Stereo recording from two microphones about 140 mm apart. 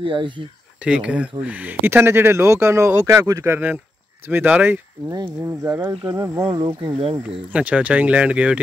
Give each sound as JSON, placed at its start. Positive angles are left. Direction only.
{"t": 0.0, "sound": "speech", "side_deg": -35}
{"t": 0.8, "sound": "speech", "side_deg": -5}
{"t": 5.1, "sound": "speech", "side_deg": -30}
{"t": 6.5, "sound": "speech", "side_deg": -30}
{"t": 7.2, "sound": "speech", "side_deg": -10}